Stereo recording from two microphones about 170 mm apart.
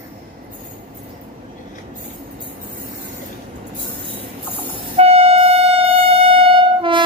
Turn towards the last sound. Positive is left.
turn(degrees=-30)  # may be behind; listen again after turning